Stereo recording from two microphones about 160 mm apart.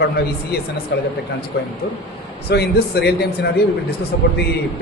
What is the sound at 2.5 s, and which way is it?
A man's voice, 90° left.